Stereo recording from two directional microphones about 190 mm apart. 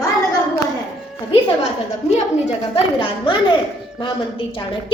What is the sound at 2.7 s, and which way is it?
Speech, 25° left (ahead or behind).